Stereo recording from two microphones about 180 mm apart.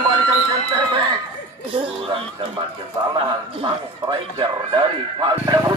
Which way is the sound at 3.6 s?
25° right (ahead or behind).